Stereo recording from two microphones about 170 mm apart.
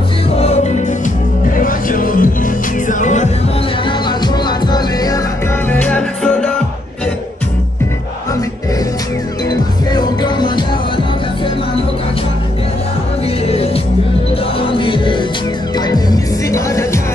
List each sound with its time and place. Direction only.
0.4 s music: 40° left (ahead or behind)
1.5 s music: 55° left (ahead or behind)
3.8 s music: 25° left (ahead or behind)
5.7 s music: 10° left (ahead or behind)
9.5 s music: 25° left (ahead or behind)
14.6 s music: 30° left (ahead or behind)